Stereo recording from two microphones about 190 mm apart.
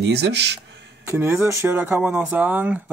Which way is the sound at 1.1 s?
15° right (ahead or behind).